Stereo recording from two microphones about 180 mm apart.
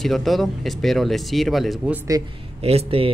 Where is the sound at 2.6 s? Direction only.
35° right (ahead or behind).